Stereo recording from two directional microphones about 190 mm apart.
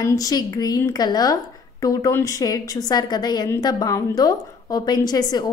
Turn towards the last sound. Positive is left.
turn(degrees=20)  # may be behind; listen again after turning